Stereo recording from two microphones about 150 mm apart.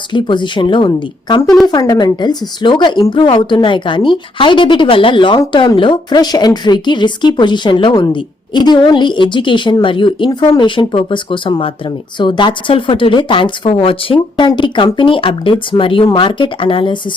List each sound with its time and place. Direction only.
0.1 s speech: 30° left (ahead or behind)